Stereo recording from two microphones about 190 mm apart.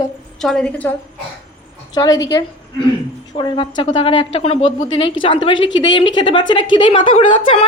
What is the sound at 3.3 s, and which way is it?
A woman's voice, 25° left (ahead or behind).